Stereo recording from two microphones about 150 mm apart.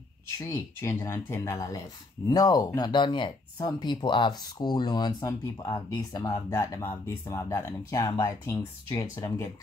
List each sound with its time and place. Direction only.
0.4 s speech: 20° left (ahead or behind)